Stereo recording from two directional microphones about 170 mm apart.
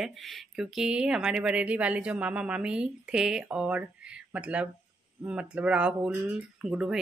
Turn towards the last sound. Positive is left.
turn(degrees=-5)  # may be behind; listen again after turning